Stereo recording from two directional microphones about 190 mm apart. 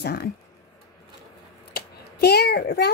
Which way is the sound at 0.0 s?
55° left (ahead or behind).